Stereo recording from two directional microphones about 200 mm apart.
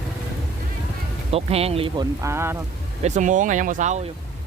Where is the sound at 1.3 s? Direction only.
30° right (ahead or behind).